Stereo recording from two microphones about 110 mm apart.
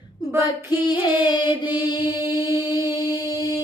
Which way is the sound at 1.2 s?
40° left (ahead or behind).